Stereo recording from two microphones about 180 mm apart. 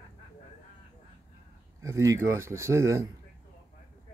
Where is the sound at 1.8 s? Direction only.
15° right (ahead or behind).